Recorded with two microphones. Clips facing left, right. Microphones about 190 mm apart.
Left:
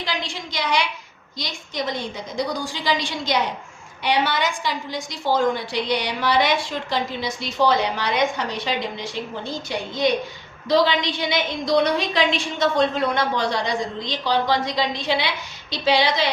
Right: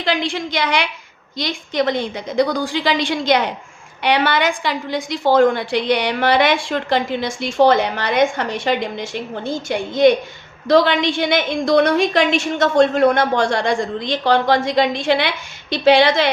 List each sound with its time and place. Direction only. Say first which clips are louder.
0.0 s a woman's voice: right 8 dB; 55° right (ahead or behind)